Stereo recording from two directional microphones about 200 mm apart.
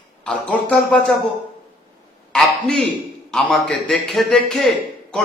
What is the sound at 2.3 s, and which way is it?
A man's voice, centre (ahead or behind).